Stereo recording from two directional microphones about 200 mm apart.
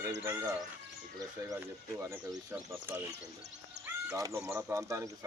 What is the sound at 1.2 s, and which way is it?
Speech, 15° right (ahead or behind).